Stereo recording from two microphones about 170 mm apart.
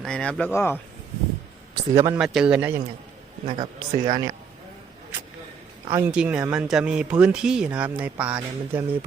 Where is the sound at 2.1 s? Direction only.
5° right (ahead or behind).